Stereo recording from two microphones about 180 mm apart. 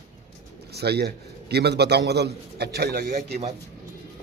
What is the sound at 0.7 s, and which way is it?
A man's voice, 65° right (ahead or behind).